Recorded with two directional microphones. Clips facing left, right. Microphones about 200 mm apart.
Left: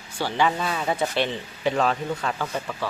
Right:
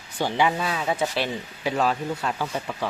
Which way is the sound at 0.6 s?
Centre (ahead or behind).